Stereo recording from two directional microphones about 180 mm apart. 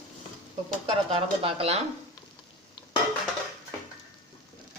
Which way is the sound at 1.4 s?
30° right (ahead or behind).